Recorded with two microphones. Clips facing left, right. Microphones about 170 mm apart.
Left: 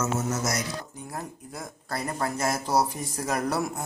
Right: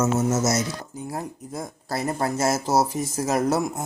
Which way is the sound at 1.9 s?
25° right (ahead or behind).